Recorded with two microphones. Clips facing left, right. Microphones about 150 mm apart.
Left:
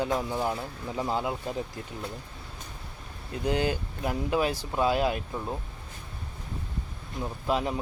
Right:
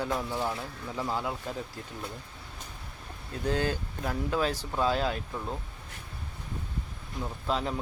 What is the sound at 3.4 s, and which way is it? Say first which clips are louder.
Speech: left 2 dB; 15° left (ahead or behind).